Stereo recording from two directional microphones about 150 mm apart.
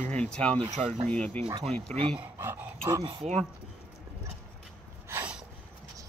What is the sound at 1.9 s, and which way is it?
Speech, 35° right (ahead or behind).